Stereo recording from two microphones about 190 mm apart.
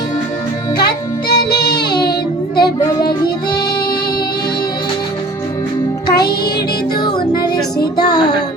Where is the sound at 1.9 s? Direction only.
20° left (ahead or behind).